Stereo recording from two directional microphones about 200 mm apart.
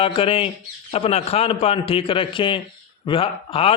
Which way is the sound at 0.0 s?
30° left (ahead or behind).